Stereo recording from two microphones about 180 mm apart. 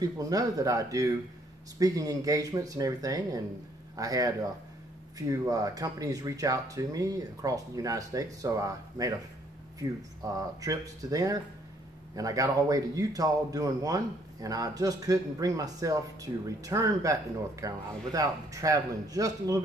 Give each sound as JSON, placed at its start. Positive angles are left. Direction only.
{"t": 0.0, "sound": "speech", "side_deg": -20}